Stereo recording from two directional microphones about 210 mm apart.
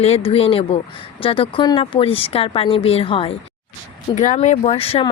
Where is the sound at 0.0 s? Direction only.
30° left (ahead or behind).